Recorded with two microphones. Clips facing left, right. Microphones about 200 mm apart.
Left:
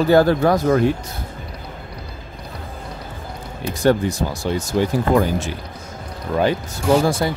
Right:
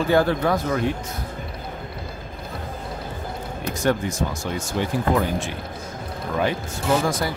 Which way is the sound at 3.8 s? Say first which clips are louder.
Left 5 dB; 35° left (ahead or behind).